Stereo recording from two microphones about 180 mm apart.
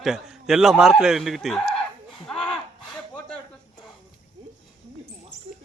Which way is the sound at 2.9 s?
5° left (ahead or behind).